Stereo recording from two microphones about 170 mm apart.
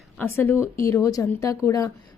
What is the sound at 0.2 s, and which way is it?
Speech, 10° left (ahead or behind).